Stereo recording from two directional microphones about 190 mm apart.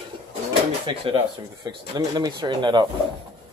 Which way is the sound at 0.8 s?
25° right (ahead or behind).